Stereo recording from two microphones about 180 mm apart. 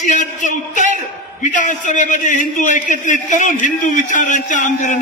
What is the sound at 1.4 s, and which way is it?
A man's voice, 45° left (ahead or behind).